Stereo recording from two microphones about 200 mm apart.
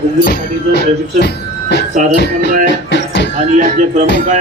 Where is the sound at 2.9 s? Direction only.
60° left (ahead or behind).